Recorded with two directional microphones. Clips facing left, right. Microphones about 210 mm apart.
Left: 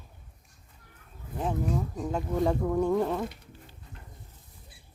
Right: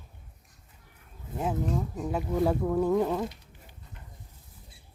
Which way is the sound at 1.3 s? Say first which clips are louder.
Right 1 dB; 25° right (ahead or behind).